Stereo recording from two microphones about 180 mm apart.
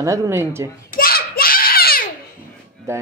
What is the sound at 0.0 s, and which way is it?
Speech, 20° right (ahead or behind).